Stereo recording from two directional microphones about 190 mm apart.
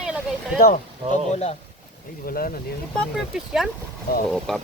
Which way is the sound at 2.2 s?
50° left (ahead or behind).